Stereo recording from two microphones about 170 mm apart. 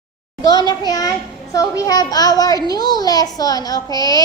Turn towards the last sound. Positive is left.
turn(degrees=25)  # may be behind; listen again after turning